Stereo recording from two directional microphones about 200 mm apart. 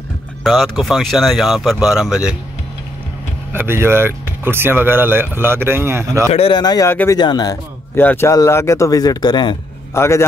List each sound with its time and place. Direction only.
0.4 s speech: centre (ahead or behind)
3.5 s speech: 10° right (ahead or behind)
6.3 s a man's voice: 25° left (ahead or behind)